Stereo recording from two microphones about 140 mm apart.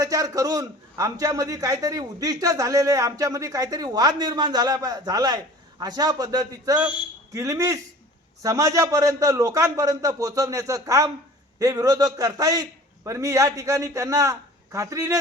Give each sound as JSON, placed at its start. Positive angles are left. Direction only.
{"t": 0.0, "sound": "a man's voice", "side_deg": -25}